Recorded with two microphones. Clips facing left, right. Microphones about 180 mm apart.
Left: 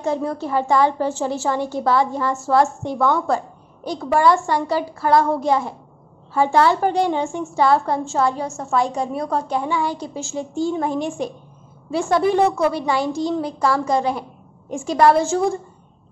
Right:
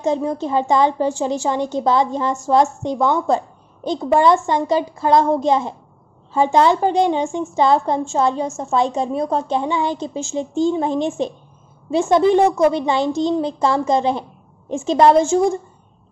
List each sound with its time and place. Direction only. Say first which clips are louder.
0.0 s a woman's voice: right 3 dB; 20° right (ahead or behind)